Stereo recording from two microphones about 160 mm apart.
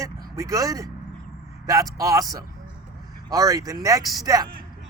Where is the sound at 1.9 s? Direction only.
20° right (ahead or behind).